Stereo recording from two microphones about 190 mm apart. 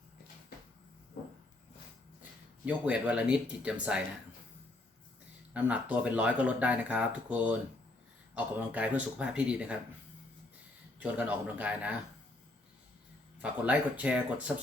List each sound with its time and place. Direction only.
2.6 s speech: 5° right (ahead or behind)
5.5 s speech: 5° right (ahead or behind)
11.0 s speech: 5° right (ahead or behind)
13.4 s speech: 5° right (ahead or behind)